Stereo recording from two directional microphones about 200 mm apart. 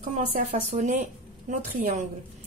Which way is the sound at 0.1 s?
35° right (ahead or behind).